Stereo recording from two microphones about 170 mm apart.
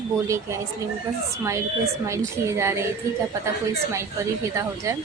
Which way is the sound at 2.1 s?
15° right (ahead or behind).